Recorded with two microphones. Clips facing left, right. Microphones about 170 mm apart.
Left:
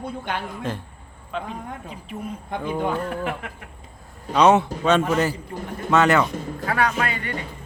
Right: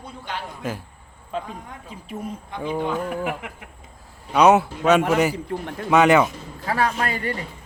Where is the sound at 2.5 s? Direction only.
50° left (ahead or behind).